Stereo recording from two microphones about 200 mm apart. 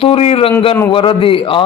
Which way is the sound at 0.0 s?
30° left (ahead or behind).